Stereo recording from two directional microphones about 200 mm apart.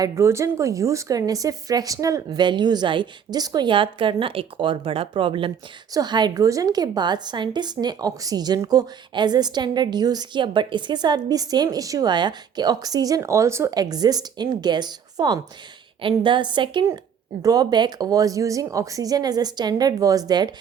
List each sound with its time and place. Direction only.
0.0 s a woman's voice: 15° right (ahead or behind)